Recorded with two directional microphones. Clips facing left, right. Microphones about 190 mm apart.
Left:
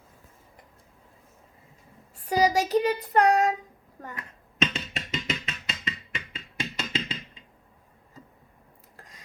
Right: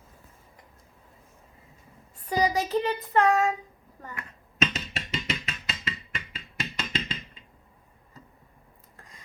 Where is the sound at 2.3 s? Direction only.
40° left (ahead or behind).